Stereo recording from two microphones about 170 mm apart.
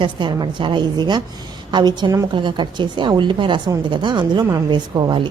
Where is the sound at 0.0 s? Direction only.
25° right (ahead or behind).